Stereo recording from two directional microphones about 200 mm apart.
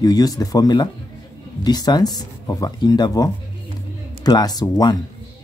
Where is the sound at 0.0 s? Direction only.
20° left (ahead or behind).